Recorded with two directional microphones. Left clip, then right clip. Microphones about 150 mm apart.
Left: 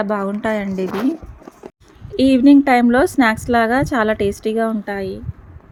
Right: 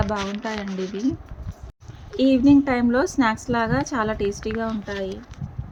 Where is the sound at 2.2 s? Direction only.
50° left (ahead or behind).